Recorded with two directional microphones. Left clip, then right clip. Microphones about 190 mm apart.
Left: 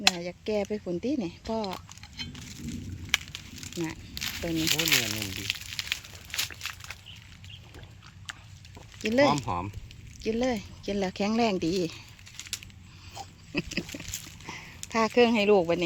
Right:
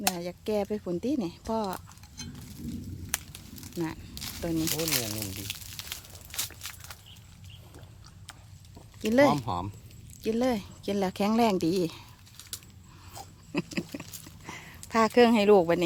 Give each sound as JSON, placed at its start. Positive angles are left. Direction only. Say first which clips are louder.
{"t": 0.0, "sound": "speech", "louder": "left 5 dB", "side_deg": -5}
{"t": 3.1, "sound": "crumpling", "louder": "left 9 dB", "side_deg": -5}
{"t": 8.3, "sound": "clip-clop", "louder": "left 8 dB", "side_deg": -15}
{"t": 9.0, "sound": "speech", "louder": "right 1 dB", "side_deg": -15}
{"t": 10.2, "sound": "speech", "louder": "right 1 dB", "side_deg": -10}
{"t": 12.4, "sound": "a sound", "louder": "left 6 dB", "side_deg": 20}
{"t": 13.1, "sound": "a sound", "louder": "left 1 dB", "side_deg": -10}